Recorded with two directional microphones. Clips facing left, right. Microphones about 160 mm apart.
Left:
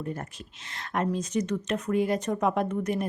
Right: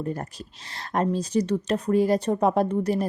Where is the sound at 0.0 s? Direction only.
35° right (ahead or behind).